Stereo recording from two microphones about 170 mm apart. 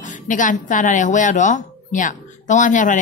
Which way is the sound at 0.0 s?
50° left (ahead or behind).